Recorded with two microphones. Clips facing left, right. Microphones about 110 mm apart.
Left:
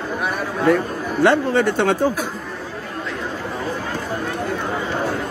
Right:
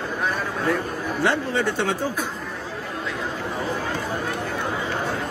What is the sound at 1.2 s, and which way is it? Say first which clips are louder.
Speech: left 7 dB; 60° left (ahead or behind).